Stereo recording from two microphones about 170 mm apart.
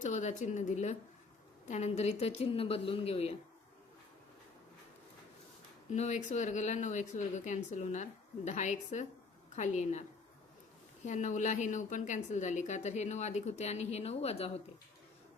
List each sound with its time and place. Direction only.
0.0 s a woman's voice: 45° left (ahead or behind)
5.9 s speech: 45° left (ahead or behind)
11.0 s speech: 45° left (ahead or behind)